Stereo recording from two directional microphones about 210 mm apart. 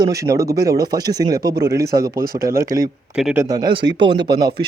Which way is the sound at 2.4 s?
45° right (ahead or behind).